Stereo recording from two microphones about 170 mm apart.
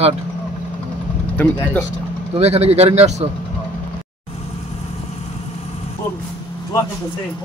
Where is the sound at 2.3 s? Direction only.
40° right (ahead or behind).